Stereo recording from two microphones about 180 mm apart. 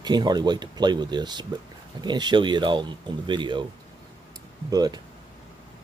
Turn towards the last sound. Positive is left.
turn(degrees=-20)  # may be behind; listen again after turning